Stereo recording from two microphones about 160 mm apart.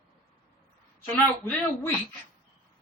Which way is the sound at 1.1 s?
10° left (ahead or behind).